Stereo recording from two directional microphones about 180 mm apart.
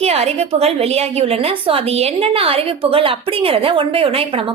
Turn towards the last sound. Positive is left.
turn(degrees=-30)  # may be behind; listen again after turning